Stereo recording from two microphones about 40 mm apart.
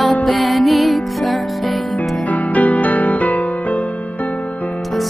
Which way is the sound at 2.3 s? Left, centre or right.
Left.